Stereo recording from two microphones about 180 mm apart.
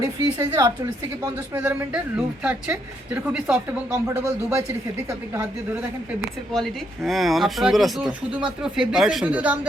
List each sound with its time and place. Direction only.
0.0 s a woman's voice: 20° right (ahead or behind)
6.5 s speech: centre (ahead or behind)